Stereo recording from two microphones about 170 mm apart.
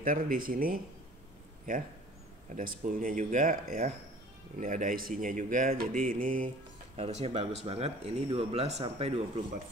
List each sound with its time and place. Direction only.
0.0 s speech: 55° right (ahead or behind)
7.0 s speech: 40° right (ahead or behind)